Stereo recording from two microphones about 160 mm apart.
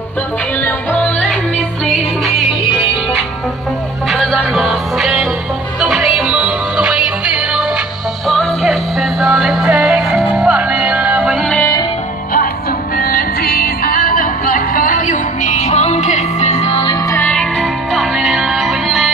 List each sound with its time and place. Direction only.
0.7 s music: 10° left (ahead or behind)
4.1 s music: centre (ahead or behind)
11.4 s music: 10° left (ahead or behind)
12.9 s music: 65° left (ahead or behind); by 16.9 s 40° left (ahead or behind)
17.1 s music: 10° left (ahead or behind)